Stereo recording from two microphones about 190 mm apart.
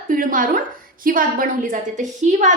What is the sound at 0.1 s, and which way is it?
A woman's voice, 45° right (ahead or behind).